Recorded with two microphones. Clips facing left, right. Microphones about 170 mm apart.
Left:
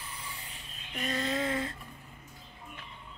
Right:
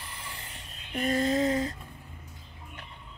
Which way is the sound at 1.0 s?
50° right (ahead or behind).